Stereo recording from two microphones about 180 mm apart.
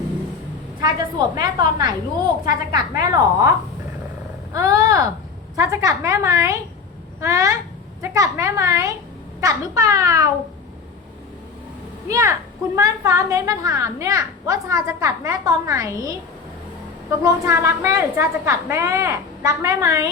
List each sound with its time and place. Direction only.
0.8 s a woman's voice: 20° right (ahead or behind)
4.5 s a woman's voice: 20° right (ahead or behind)
12.0 s a woman's voice: 15° right (ahead or behind)
17.1 s a woman's voice: 15° right (ahead or behind)